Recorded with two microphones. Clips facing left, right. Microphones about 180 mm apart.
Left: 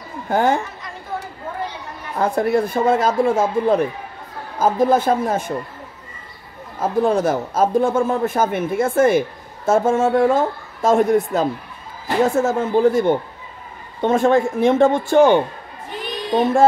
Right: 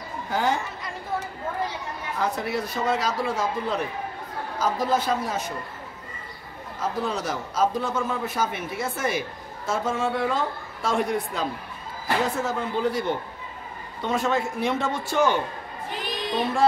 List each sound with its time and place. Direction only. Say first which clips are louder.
0.3 s a woman's voice: left 7 dB; 55° left (ahead or behind)
2.1 s a man's voice: left 10 dB; 50° left (ahead or behind)
6.8 s a man's voice: left 10 dB; 50° left (ahead or behind)